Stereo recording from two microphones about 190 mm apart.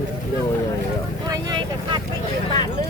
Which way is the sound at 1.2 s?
20° right (ahead or behind).